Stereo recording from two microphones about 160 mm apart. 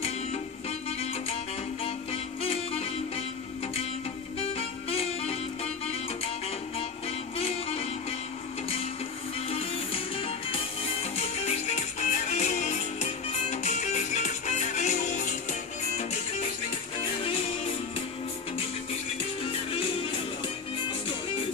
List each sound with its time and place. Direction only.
2.4 s music: 40° left (ahead or behind)
4.4 s music: 40° left (ahead or behind)
9.5 s music: 35° left (ahead or behind)
17.0 s music: 35° left (ahead or behind)
19.7 s music: 35° left (ahead or behind)